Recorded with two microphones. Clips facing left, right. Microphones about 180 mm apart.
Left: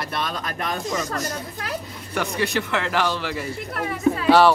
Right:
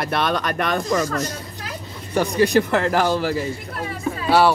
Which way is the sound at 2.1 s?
35° right (ahead or behind).